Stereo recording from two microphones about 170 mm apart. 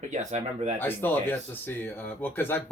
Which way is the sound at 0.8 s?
10° left (ahead or behind).